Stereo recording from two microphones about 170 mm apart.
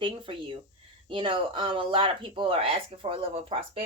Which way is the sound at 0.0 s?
30° right (ahead or behind).